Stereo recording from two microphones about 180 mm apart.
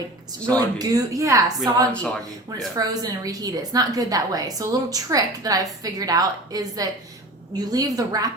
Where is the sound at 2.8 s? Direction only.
20° right (ahead or behind).